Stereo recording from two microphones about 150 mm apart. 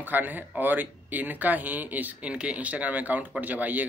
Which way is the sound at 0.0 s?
10° right (ahead or behind).